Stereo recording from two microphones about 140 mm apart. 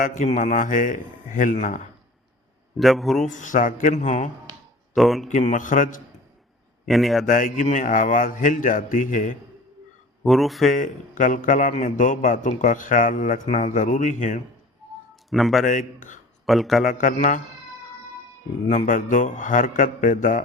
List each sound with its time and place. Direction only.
0.0 s speech: 60° left (ahead or behind)
2.7 s speech: centre (ahead or behind)
3.2 s a man's voice: 65° left (ahead or behind)
4.9 s speech: centre (ahead or behind)
5.3 s speech: 60° left (ahead or behind)
6.8 s speech: centre (ahead or behind)
7.3 s speech: 70° left (ahead or behind)
10.2 s speech: centre (ahead or behind)
10.7 s a man's voice: 70° left (ahead or behind)
15.1 s a sound: centre (ahead or behind)
15.6 s a man's voice: 65° left (ahead or behind)
16.5 s speech: centre (ahead or behind)
16.8 s speech: 70° left (ahead or behind)
18.7 s speech: 65° left (ahead or behind)